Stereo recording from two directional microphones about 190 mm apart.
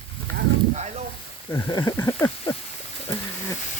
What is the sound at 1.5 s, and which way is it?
Speech, 25° left (ahead or behind).